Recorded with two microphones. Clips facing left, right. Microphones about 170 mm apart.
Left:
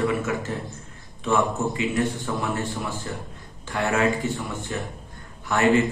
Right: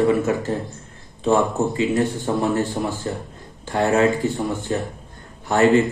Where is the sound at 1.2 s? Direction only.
35° right (ahead or behind).